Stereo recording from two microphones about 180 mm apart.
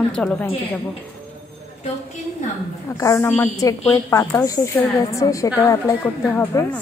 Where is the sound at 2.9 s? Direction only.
15° left (ahead or behind).